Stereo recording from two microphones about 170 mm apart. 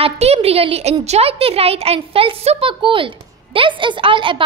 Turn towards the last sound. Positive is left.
turn(degrees=-30)  # may be behind; listen again after turning